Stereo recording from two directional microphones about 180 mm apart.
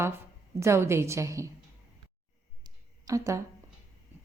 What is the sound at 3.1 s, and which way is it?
Speech, 15° right (ahead or behind).